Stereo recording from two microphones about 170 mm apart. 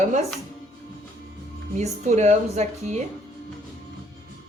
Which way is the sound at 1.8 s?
40° right (ahead or behind).